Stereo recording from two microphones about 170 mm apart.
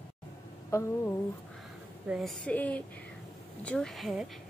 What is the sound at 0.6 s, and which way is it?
Speech, 15° left (ahead or behind).